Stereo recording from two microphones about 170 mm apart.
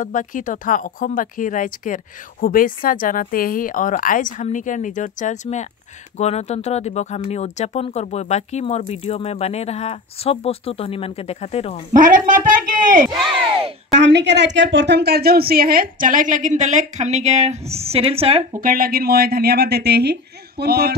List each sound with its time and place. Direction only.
0.0 s speech: 50° left (ahead or behind)
11.9 s a woman's voice: 50° right (ahead or behind)
13.9 s a woman's voice: 90° right; by 18.4 s 35° right (ahead or behind)
18.6 s speech: 55° right (ahead or behind)